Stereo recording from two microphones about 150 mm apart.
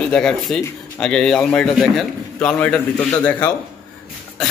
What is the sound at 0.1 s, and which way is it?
Speech, 5° left (ahead or behind).